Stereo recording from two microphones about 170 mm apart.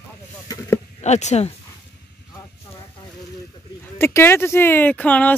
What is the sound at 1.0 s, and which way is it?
Speech, 40° left (ahead or behind).